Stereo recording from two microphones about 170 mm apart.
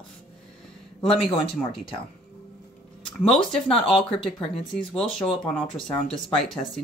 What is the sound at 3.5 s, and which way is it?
Speech, 5° left (ahead or behind).